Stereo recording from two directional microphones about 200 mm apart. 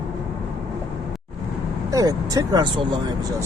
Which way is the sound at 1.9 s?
20° right (ahead or behind).